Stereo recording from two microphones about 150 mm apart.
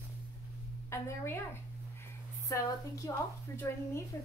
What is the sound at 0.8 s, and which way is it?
A woman's voice, 20° left (ahead or behind).